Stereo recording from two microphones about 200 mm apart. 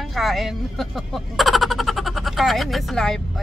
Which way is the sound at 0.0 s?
Centre (ahead or behind).